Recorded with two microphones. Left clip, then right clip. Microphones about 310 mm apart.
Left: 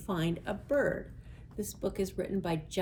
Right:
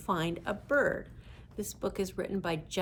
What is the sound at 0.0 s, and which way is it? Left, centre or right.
A woman's voice, centre.